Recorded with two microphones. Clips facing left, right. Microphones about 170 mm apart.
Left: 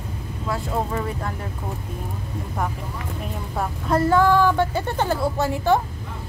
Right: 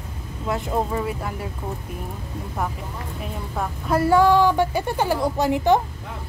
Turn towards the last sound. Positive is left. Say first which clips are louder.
# right 2 dB
turn(degrees=-20)  # may be behind; listen again after turning